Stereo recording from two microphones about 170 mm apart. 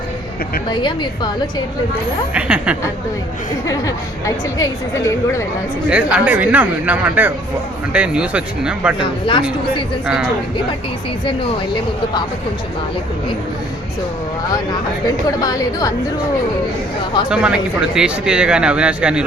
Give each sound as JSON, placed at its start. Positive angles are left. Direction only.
{"t": 0.7, "sound": "a woman's voice", "side_deg": 25}
{"t": 2.3, "sound": "speech", "side_deg": -5}
{"t": 4.5, "sound": "a woman's voice", "side_deg": 20}
{"t": 5.9, "sound": "speech", "side_deg": -5}
{"t": 9.0, "sound": "a woman's voice", "side_deg": 30}
{"t": 15.4, "sound": "a woman's voice", "side_deg": 20}
{"t": 17.2, "sound": "speech", "side_deg": -5}